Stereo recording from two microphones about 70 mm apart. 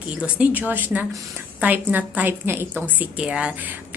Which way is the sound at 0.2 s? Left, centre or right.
Centre.